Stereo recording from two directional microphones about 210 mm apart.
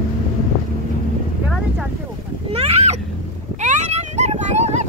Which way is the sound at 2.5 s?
30° right (ahead or behind).